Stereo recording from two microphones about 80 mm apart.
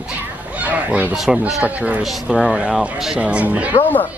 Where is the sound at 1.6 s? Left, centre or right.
Centre.